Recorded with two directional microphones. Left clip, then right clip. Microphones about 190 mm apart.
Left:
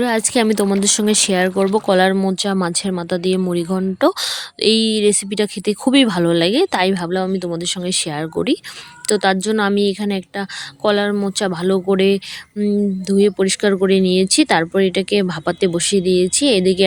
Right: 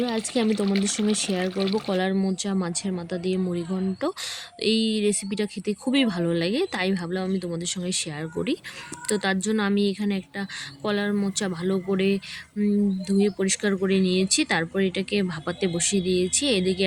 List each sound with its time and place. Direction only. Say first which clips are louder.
0.0 s speech: left 9 dB; 50° left (ahead or behind)